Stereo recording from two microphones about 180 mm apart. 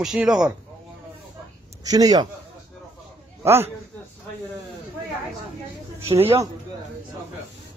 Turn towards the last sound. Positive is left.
turn(degrees=-15)  # may be behind; listen again after turning